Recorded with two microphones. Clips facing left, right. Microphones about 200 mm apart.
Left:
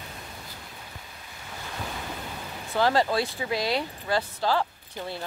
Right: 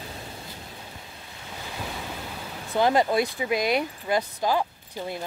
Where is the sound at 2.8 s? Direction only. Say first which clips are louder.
Right 2 dB; 20° right (ahead or behind).